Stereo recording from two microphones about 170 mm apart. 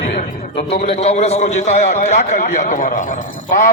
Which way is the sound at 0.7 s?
35° left (ahead or behind).